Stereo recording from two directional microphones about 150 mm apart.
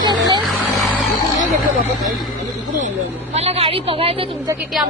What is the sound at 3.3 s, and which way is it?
A woman's voice, 45° right (ahead or behind).